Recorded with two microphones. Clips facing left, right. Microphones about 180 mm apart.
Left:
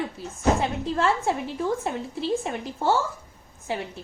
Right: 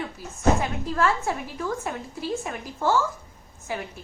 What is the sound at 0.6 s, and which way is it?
A woman's voice, 25° left (ahead or behind).